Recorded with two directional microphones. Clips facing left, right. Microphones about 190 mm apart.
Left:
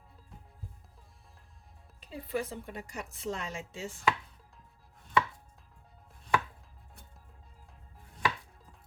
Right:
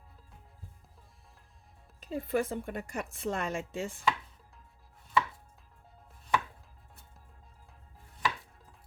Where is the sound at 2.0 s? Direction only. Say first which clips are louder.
Right 4 dB; 45° right (ahead or behind).